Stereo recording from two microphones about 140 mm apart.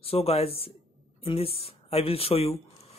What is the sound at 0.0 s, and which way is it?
Speech, 45° left (ahead or behind).